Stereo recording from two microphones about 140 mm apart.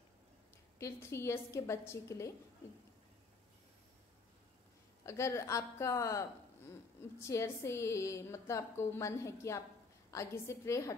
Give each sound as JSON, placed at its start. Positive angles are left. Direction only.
{"t": 0.7, "sound": "a woman's voice", "side_deg": 20}
{"t": 5.0, "sound": "a woman's voice", "side_deg": 20}